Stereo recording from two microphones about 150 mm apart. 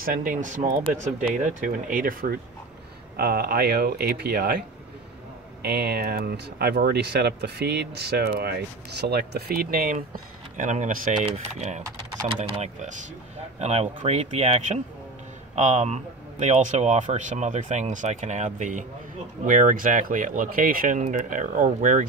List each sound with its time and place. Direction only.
0.0 s speech: 65° right (ahead or behind)
3.2 s speech: 90° right; by 22.0 s 60° right (ahead or behind)